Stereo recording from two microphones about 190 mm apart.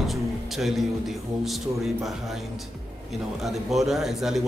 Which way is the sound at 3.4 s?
Centre (ahead or behind).